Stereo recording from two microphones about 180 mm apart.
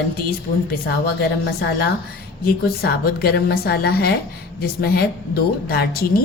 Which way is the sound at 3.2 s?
60° left (ahead or behind).